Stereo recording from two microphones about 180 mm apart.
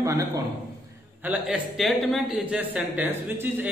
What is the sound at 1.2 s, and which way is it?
A man's voice, 5° right (ahead or behind).